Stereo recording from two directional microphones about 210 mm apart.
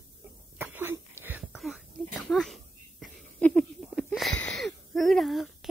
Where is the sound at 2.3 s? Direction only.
Centre (ahead or behind).